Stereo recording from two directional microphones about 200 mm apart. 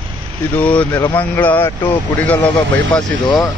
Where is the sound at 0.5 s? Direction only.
5° left (ahead or behind).